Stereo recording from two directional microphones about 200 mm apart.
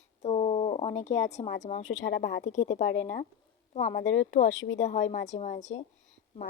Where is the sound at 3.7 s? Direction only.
35° left (ahead or behind).